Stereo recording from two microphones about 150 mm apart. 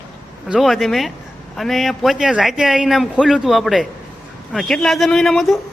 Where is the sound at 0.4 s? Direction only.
Centre (ahead or behind).